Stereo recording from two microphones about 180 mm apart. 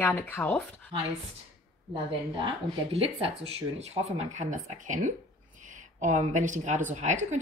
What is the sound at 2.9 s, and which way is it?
A woman's voice, 30° right (ahead or behind).